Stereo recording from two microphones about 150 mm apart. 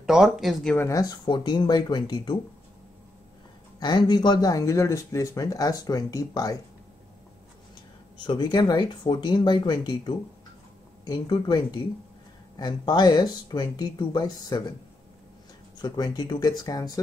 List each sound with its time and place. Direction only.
0.0 s speech: 5° right (ahead or behind)
0.7 s speech: 20° left (ahead or behind)
3.8 s speech: 30° left (ahead or behind)
8.2 s speech: 30° left (ahead or behind)
15.8 s speech: 25° left (ahead or behind)